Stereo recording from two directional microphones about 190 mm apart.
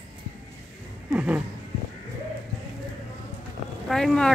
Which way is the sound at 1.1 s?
5° right (ahead or behind).